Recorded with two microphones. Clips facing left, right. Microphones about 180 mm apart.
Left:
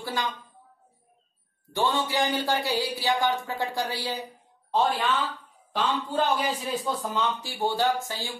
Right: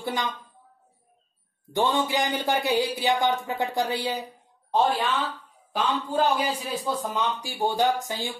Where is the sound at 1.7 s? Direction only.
20° right (ahead or behind).